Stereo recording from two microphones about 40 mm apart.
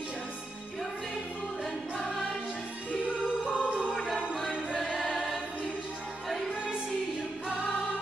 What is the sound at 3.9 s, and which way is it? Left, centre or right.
Music, centre.